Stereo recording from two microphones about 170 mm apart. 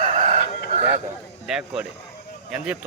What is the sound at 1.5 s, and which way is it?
Speech, 5° right (ahead or behind).